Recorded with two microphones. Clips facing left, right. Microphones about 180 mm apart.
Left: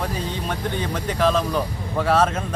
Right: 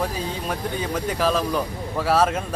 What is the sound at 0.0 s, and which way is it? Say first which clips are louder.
Speech: even; 5° right (ahead or behind).